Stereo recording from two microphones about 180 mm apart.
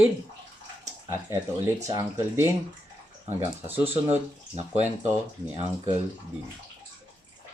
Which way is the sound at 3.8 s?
35° right (ahead or behind).